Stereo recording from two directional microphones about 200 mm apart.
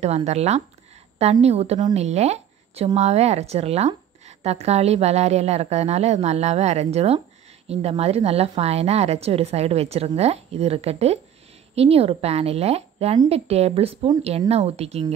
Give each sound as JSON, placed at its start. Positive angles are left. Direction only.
{"t": 0.0, "sound": "a woman's voice", "side_deg": -35}